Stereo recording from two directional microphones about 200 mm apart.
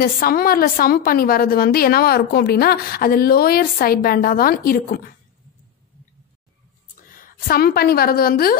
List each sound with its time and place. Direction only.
0.0 s a woman's voice: 45° left (ahead or behind)
7.2 s a woman's voice: 45° left (ahead or behind)